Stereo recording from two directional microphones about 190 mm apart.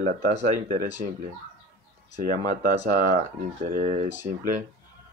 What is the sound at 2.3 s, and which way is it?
Speech, 40° right (ahead or behind).